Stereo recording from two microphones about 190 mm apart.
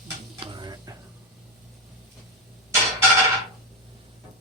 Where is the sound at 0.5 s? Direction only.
20° right (ahead or behind).